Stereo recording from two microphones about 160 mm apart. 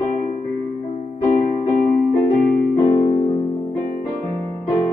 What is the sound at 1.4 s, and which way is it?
Music, 50° left (ahead or behind).